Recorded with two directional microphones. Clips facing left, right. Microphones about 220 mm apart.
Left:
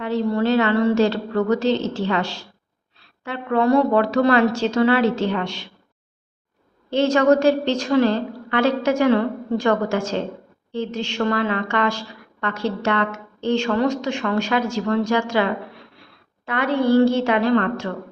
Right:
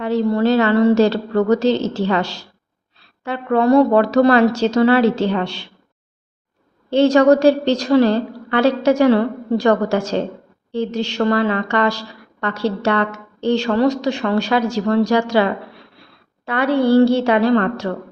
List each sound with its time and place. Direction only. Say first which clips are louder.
0.0 s a woman's voice: right 4 dB; 40° right (ahead or behind)
6.9 s a woman's voice: right 4 dB; 35° right (ahead or behind)
16.5 s a woman's voice: right 3 dB; 35° right (ahead or behind)